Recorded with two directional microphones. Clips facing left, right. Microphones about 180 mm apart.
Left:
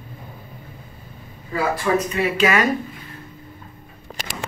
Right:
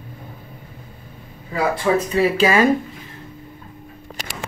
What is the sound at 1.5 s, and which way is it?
Speech, 30° right (ahead or behind).